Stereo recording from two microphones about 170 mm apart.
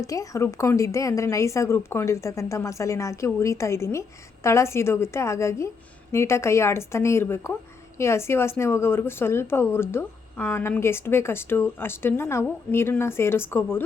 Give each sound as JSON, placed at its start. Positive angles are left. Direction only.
{"t": 0.0, "sound": "a woman's voice", "side_deg": 20}